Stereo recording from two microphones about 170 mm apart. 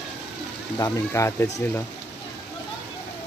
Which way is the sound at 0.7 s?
15° left (ahead or behind).